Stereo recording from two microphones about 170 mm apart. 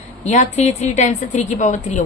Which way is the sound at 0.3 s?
45° left (ahead or behind).